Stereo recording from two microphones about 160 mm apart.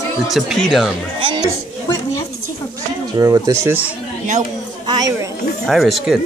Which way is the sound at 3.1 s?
20° right (ahead or behind).